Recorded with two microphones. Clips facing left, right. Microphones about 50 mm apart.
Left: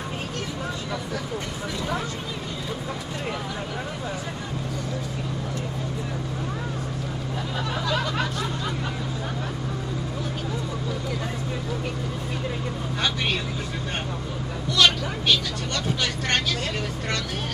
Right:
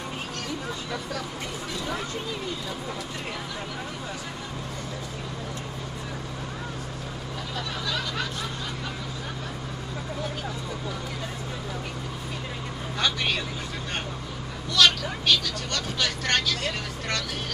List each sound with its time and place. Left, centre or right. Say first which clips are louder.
14.8 s vehicle: left 1 dB; left